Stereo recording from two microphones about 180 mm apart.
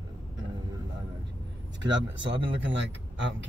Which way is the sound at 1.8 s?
90° right.